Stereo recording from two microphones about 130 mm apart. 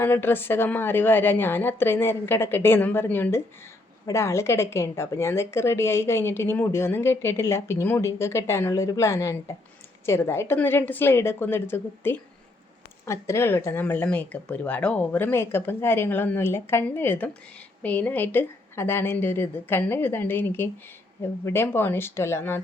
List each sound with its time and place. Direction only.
0.0 s a woman's voice: 15° left (ahead or behind)